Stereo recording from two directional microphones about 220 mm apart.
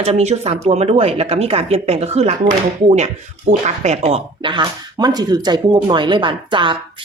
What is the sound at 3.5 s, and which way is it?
A woman's voice, 30° right (ahead or behind).